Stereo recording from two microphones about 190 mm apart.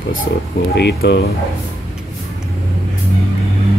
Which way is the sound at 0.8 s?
60° left (ahead or behind).